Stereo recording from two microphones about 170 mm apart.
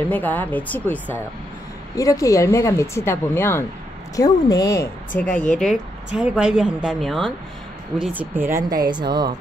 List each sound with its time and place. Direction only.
0.1 s speech: 10° left (ahead or behind)
5.2 s a woman's voice: 5° left (ahead or behind)
8.0 s speech: 10° right (ahead or behind); by 9.3 s 25° right (ahead or behind)